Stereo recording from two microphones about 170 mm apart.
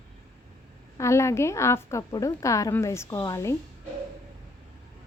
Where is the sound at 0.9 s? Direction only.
15° left (ahead or behind).